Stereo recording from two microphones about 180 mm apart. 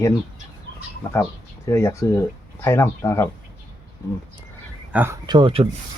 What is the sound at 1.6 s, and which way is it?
Speech, 15° left (ahead or behind).